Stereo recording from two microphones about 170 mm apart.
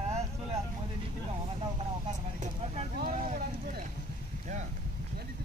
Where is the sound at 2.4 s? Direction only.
40° right (ahead or behind).